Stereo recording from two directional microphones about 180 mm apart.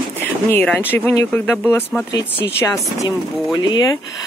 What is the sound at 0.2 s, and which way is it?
Speech, 10° left (ahead or behind).